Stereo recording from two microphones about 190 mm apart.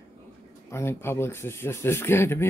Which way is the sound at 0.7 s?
15° left (ahead or behind).